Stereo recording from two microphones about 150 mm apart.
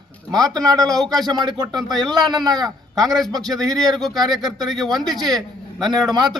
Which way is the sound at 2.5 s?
25° right (ahead or behind).